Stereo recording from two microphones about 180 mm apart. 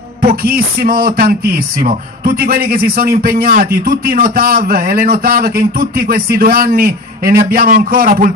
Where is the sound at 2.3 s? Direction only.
55° right (ahead or behind).